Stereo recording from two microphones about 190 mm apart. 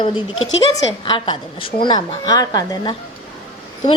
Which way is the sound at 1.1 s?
25° left (ahead or behind).